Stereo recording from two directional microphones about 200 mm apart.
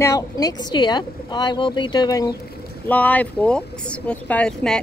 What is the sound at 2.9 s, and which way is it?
Speech, 10° left (ahead or behind).